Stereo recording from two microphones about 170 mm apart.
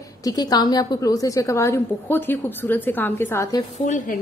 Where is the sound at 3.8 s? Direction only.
50° left (ahead or behind).